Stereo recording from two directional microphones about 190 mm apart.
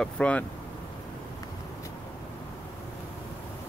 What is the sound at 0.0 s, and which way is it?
Speech, 5° left (ahead or behind).